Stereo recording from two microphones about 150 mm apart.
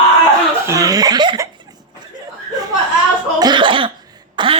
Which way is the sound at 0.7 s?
25° right (ahead or behind).